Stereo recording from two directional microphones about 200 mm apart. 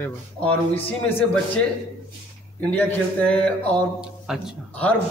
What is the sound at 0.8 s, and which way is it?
Speech, 10° left (ahead or behind).